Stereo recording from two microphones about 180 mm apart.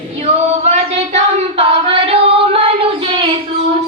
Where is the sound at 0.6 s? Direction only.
40° right (ahead or behind).